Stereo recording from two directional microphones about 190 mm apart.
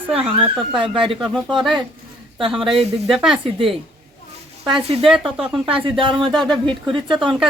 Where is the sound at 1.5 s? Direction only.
Centre (ahead or behind).